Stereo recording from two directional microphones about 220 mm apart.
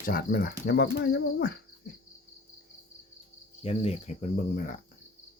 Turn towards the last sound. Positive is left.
turn(degrees=35)  # may be behind; listen again after turning